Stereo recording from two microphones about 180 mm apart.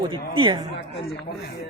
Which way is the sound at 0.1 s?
25° right (ahead or behind).